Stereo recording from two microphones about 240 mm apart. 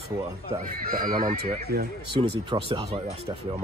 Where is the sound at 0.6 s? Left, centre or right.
Right.